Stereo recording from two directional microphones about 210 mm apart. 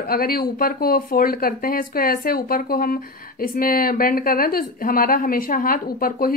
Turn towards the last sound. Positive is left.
turn(degrees=45)  # may be behind; listen again after turning